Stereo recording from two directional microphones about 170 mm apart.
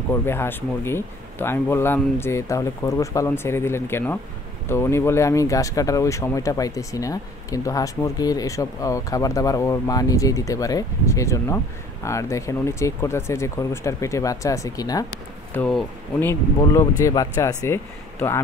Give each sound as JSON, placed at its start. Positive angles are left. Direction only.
{"t": 0.1, "sound": "speech", "side_deg": 15}
{"t": 15.5, "sound": "speech", "side_deg": 10}